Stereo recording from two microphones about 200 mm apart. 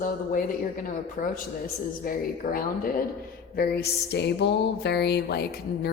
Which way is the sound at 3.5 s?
55° left (ahead or behind).